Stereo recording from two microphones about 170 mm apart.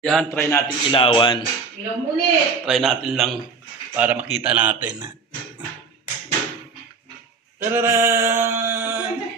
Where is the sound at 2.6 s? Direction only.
Centre (ahead or behind).